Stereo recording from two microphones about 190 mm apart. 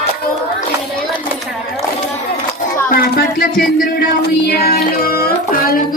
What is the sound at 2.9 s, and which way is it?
Music, 50° left (ahead or behind).